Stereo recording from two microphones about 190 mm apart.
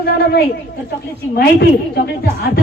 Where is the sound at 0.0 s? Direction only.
55° left (ahead or behind).